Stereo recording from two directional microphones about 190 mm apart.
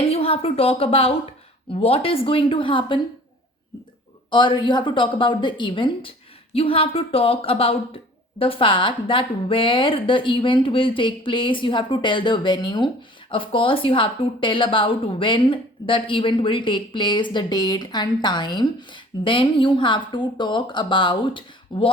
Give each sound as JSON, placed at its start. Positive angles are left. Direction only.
{"t": 0.1, "sound": "a woman's voice", "side_deg": 30}
{"t": 4.3, "sound": "a woman's voice", "side_deg": 25}